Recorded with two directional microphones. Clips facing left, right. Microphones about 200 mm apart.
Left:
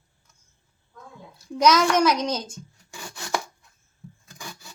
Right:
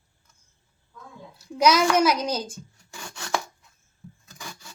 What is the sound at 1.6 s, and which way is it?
A child's voice, 10° right (ahead or behind).